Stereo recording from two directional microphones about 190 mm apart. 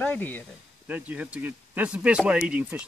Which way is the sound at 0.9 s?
10° right (ahead or behind).